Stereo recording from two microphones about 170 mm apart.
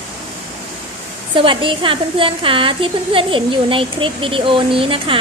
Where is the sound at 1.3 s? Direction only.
30° right (ahead or behind).